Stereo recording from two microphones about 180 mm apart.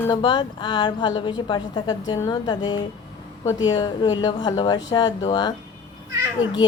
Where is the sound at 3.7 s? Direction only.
25° left (ahead or behind).